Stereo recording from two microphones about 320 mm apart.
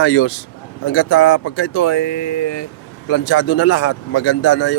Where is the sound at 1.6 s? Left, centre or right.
Left.